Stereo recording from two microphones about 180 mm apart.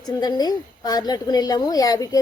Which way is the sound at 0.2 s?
20° left (ahead or behind).